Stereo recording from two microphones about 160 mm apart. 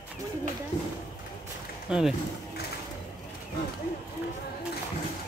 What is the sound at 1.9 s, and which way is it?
Speech, 5° right (ahead or behind).